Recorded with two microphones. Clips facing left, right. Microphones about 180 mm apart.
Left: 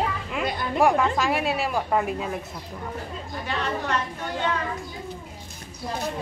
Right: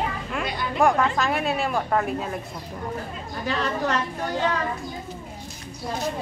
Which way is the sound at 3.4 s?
40° right (ahead or behind).